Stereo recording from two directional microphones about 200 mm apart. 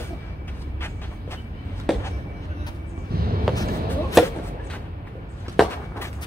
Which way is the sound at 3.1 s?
50° right (ahead or behind).